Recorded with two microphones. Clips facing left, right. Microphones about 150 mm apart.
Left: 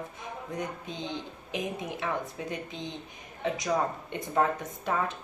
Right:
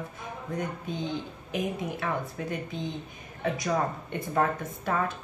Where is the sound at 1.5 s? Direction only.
20° left (ahead or behind).